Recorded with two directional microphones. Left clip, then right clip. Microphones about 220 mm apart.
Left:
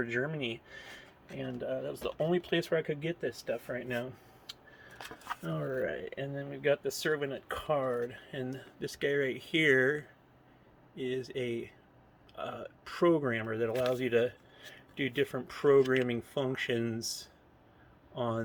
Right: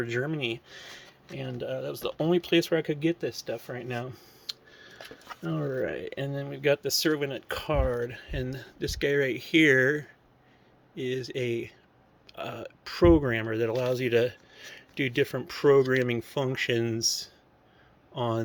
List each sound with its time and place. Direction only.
0.0 s speech: 50° right (ahead or behind)